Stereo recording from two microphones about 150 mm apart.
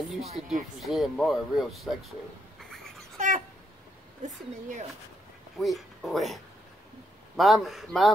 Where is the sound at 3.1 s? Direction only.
55° right (ahead or behind).